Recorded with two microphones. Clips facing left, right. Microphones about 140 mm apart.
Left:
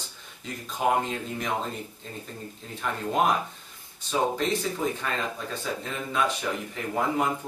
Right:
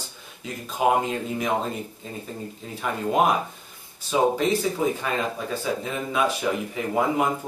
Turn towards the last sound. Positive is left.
turn(degrees=-10)  # may be behind; listen again after turning